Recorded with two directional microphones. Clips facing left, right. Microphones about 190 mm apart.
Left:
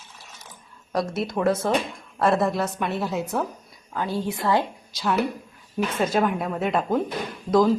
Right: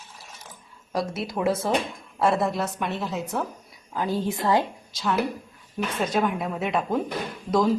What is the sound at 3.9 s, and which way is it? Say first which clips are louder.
Speech: right 1 dB; 15° right (ahead or behind).